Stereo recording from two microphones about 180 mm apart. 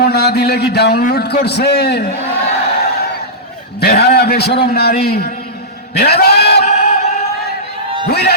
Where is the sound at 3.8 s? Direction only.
65° left (ahead or behind).